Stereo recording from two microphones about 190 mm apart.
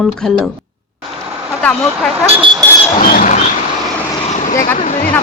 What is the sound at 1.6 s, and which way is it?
Speech, 5° left (ahead or behind).